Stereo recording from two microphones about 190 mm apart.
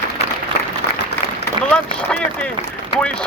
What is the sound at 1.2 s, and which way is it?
Applause, 10° left (ahead or behind).